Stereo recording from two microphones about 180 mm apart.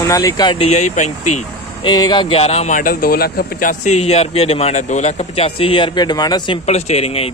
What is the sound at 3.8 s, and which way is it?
A man's voice, 35° left (ahead or behind).